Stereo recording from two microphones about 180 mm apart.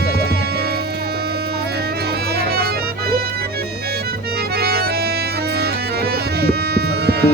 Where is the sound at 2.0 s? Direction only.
60° right (ahead or behind).